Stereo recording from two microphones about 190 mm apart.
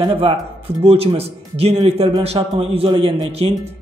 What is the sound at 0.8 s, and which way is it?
Speech, 30° right (ahead or behind).